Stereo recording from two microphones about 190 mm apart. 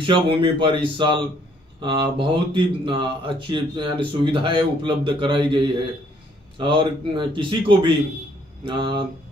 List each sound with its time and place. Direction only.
0.0 s speech: 25° right (ahead or behind)